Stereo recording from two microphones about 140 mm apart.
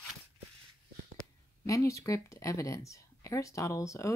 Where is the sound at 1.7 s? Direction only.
20° left (ahead or behind).